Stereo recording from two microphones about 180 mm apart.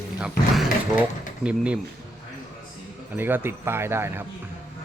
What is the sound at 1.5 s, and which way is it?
Speech, 5° right (ahead or behind).